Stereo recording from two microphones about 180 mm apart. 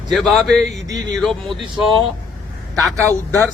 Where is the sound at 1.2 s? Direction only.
Centre (ahead or behind).